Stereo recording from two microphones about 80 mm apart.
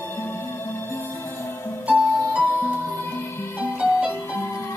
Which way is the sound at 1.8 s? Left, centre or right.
Centre.